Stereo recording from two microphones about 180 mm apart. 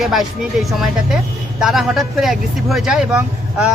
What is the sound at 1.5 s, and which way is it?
Speech, centre (ahead or behind).